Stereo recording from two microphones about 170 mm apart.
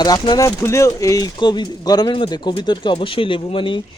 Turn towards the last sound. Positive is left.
turn(degrees=30)  # may be behind; listen again after turning